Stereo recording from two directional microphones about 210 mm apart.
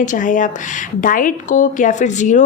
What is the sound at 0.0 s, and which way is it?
Speech, 35° left (ahead or behind).